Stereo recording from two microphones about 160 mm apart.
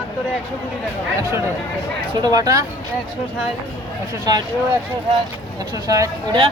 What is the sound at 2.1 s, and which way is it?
Speech, 25° right (ahead or behind).